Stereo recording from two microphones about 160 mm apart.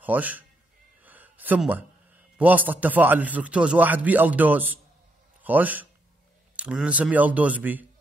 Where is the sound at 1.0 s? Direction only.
10° right (ahead or behind).